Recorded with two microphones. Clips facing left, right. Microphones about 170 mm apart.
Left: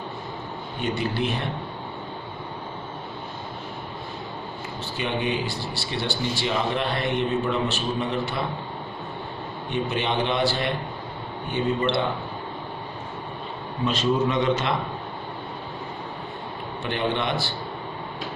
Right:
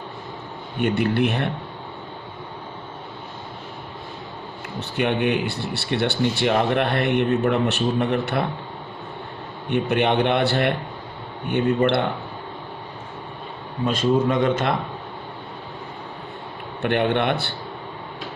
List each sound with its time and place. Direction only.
0.7 s speech: 60° right (ahead or behind)
4.7 s speech: 60° right (ahead or behind)
9.7 s speech: 60° right (ahead or behind)
13.8 s a man's voice: 50° right (ahead or behind)
16.8 s speech: 60° right (ahead or behind)